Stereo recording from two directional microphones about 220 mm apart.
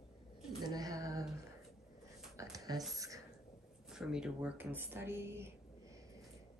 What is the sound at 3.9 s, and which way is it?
Speech, centre (ahead or behind).